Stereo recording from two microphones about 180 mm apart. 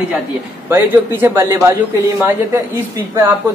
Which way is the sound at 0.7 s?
10° right (ahead or behind).